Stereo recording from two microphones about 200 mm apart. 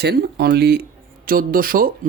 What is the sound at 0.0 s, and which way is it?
Speech, 55° right (ahead or behind).